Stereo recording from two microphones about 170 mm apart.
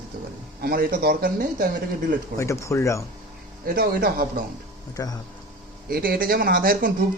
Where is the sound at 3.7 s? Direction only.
65° right (ahead or behind).